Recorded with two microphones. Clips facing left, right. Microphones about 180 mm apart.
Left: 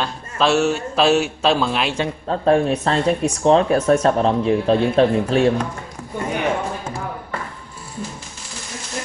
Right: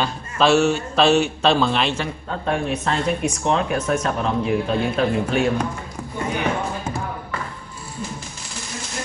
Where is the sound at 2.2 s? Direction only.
35° left (ahead or behind).